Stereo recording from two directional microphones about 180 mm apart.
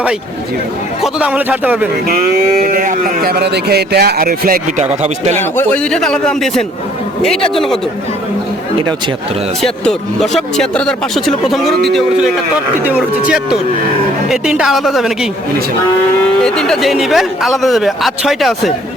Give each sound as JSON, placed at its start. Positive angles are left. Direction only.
{"t": 1.0, "sound": "speech", "side_deg": -5}
{"t": 2.2, "sound": "speech", "side_deg": -50}
{"t": 4.8, "sound": "speech", "side_deg": -40}
{"t": 5.4, "sound": "speech", "side_deg": 10}
{"t": 9.6, "sound": "speech", "side_deg": 0}
{"t": 16.4, "sound": "speech", "side_deg": 5}